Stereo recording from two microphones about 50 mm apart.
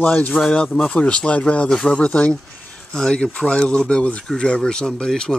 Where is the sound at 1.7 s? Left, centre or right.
Centre.